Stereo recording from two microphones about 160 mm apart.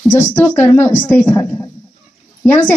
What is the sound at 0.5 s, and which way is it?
A woman's voice, 15° left (ahead or behind).